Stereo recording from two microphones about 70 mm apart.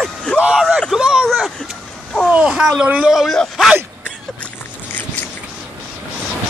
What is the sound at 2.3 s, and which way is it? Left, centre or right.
Speech, centre.